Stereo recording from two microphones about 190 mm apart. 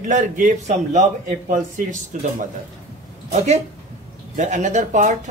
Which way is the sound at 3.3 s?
35° right (ahead or behind).